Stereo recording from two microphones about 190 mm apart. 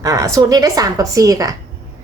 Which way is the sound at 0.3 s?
20° right (ahead or behind).